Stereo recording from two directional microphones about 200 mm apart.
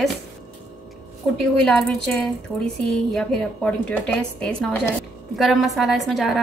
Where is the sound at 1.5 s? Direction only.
Centre (ahead or behind).